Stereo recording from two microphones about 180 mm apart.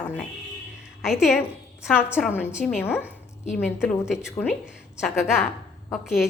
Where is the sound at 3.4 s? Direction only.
40° left (ahead or behind).